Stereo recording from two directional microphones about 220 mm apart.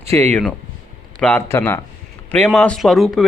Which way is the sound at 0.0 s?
10° left (ahead or behind).